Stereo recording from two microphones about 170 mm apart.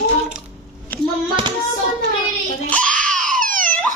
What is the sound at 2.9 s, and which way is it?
Crying, 50° right (ahead or behind).